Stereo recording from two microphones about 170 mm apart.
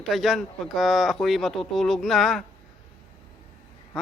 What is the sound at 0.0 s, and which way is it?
Speech, centre (ahead or behind).